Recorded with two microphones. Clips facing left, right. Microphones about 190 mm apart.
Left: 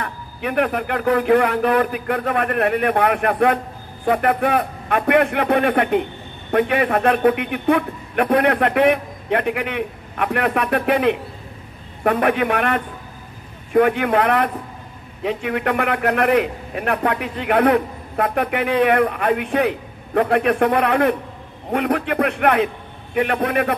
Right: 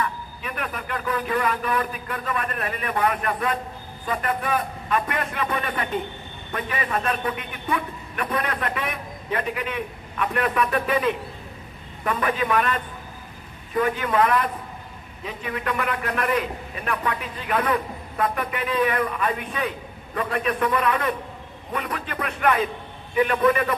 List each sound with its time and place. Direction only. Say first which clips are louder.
0.0 s a man's voice: left 3 dB; 70° left (ahead or behind)